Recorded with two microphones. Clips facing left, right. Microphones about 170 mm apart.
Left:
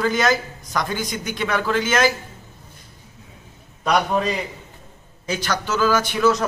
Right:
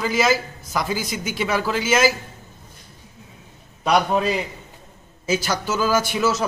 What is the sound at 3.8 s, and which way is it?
A man's voice, 5° right (ahead or behind).